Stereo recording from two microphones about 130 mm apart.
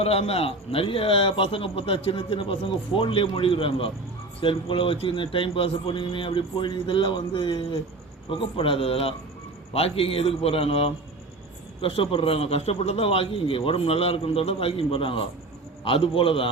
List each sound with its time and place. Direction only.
0.0 s a man's voice: 50° left (ahead or behind)